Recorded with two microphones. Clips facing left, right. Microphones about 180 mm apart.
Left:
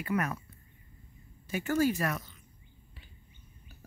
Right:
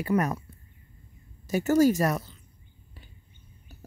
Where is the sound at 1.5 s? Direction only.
40° right (ahead or behind).